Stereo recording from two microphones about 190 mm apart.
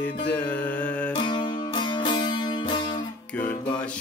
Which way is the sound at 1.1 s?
25° left (ahead or behind).